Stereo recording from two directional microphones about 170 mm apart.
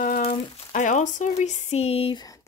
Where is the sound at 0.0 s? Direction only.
55° left (ahead or behind); by 2.2 s 35° left (ahead or behind).